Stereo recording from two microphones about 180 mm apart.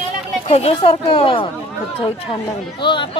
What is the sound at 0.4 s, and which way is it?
Speech, 35° left (ahead or behind).